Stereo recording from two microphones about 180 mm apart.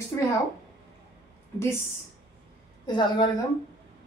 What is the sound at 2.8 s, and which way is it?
Speech, 25° left (ahead or behind).